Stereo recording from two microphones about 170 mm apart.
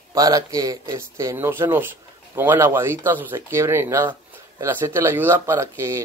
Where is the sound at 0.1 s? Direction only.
20° right (ahead or behind).